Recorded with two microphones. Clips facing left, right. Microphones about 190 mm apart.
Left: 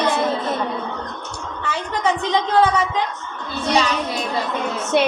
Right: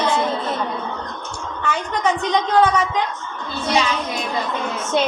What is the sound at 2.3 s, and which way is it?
Speech, 25° left (ahead or behind).